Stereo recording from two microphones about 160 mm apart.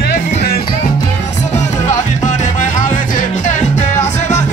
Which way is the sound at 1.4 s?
45° left (ahead or behind).